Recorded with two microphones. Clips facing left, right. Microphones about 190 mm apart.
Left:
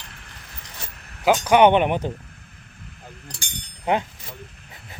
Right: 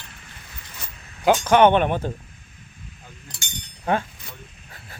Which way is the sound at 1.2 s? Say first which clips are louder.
Even; 15° left (ahead or behind).